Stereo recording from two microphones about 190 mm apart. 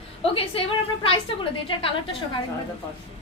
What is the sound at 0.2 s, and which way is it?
A woman's voice, 30° left (ahead or behind).